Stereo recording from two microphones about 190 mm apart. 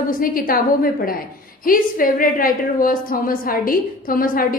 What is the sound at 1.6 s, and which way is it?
A woman's voice, 45° left (ahead or behind).